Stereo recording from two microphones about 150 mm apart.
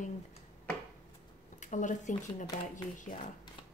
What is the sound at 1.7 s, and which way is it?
Speech, 55° left (ahead or behind).